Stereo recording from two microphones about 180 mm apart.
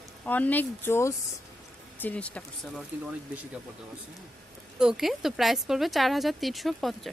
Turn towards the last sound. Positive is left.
turn(degrees=0)  # may be behind; listen again after turning